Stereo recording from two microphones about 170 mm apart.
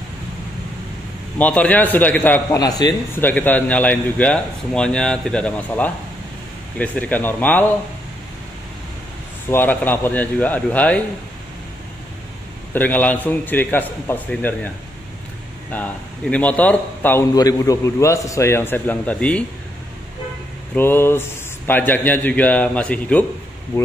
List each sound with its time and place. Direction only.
1.4 s a man's voice: 10° left (ahead or behind)
2.8 s speech: 25° left (ahead or behind)
3.2 s a man's voice: 10° left (ahead or behind)
9.5 s a man's voice: 10° left (ahead or behind)
12.7 s a man's voice: 10° left (ahead or behind)
15.7 s a man's voice: 10° left (ahead or behind)
20.7 s a man's voice: 15° left (ahead or behind)